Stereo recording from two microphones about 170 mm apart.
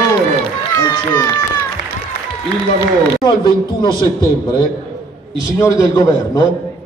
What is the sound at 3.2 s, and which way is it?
Speech, 25° left (ahead or behind).